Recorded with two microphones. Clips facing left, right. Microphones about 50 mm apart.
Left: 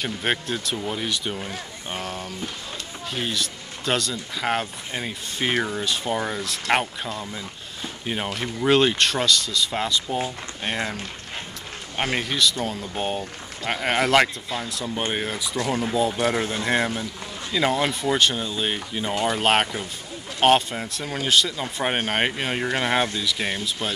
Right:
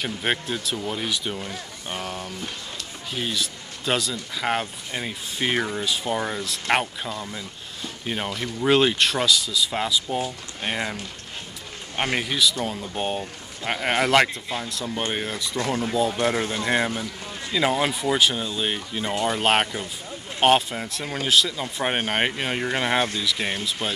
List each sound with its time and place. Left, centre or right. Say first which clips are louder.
0.0 s a man's voice: even; centre
8.3 s speech: left 1 dB; left
8.6 s a man's voice: even; centre
12.0 s a man's voice: even; centre